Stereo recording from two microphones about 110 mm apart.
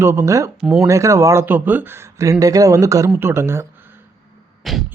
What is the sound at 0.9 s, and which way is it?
A man's voice, 30° right (ahead or behind).